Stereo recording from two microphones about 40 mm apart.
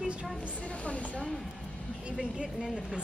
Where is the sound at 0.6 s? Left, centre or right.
Left.